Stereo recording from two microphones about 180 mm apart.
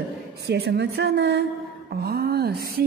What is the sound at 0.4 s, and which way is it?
Mantra, 70° right (ahead or behind).